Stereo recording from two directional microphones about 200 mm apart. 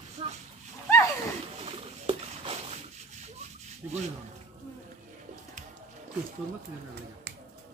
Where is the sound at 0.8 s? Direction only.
15° left (ahead or behind).